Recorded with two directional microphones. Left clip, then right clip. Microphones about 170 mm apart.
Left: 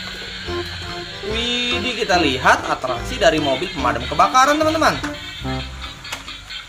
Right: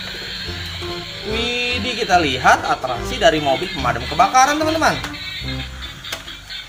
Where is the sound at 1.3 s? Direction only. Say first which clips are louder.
Even; 10° left (ahead or behind).